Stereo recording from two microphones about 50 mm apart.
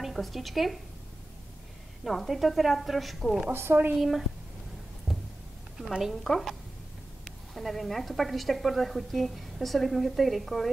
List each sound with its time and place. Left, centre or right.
0.0 s speech: centre
2.0 s a woman's voice: centre
3.7 s speech: right
5.8 s a woman's voice: centre
6.2 s a woman's voice: centre
7.5 s a woman's voice: centre